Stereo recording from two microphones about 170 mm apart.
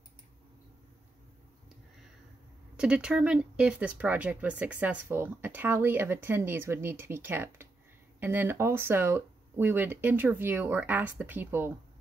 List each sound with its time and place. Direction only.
2.8 s speech: 5° right (ahead or behind)